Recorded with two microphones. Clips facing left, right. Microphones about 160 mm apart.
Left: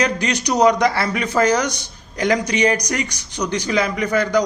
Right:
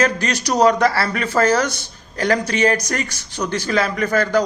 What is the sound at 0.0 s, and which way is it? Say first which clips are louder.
A man's voice: right 1 dB; 15° left (ahead or behind).